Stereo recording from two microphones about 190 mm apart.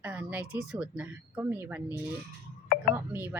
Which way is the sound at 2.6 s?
50° left (ahead or behind).